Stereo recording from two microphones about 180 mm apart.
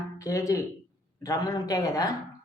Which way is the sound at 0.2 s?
20° left (ahead or behind).